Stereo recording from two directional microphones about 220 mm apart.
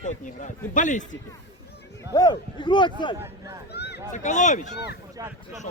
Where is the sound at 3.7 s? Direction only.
50° left (ahead or behind).